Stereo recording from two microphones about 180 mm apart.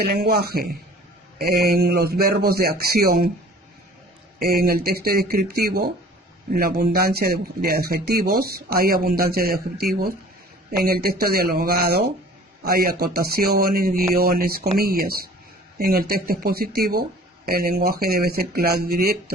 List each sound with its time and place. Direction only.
0.0 s speech: 60° right (ahead or behind)
1.7 s speech: 60° right (ahead or behind)
4.4 s speech: 55° right (ahead or behind)